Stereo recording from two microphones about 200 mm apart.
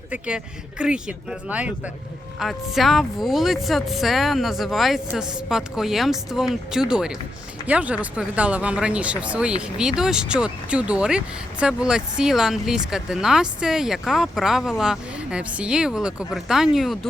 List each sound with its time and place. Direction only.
0.1 s speech: 5° right (ahead or behind)